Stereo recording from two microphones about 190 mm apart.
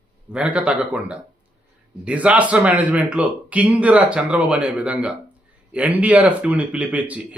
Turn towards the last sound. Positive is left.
turn(degrees=-5)  # may be behind; listen again after turning